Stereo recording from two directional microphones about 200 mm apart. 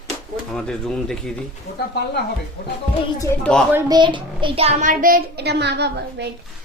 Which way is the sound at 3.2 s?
5° left (ahead or behind).